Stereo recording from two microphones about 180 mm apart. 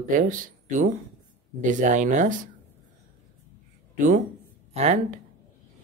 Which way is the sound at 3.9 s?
45° right (ahead or behind).